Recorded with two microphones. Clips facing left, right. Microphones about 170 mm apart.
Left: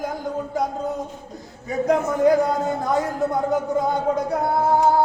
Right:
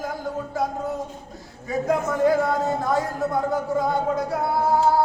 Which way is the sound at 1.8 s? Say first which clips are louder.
Left 3 dB; 20° left (ahead or behind).